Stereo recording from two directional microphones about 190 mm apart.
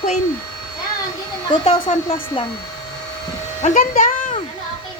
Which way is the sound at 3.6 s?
45° left (ahead or behind).